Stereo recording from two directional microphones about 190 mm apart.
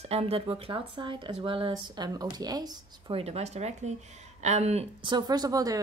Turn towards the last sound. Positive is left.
turn(degrees=-20)  # may be behind; listen again after turning